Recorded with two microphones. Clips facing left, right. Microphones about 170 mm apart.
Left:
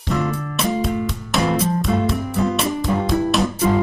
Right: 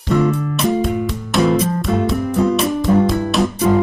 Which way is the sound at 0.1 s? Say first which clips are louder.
Right 6 dB; centre (ahead or behind).